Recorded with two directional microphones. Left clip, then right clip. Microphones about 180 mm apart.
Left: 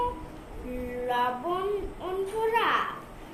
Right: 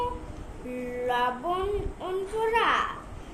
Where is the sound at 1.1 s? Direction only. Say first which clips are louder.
Right 1 dB; 20° right (ahead or behind).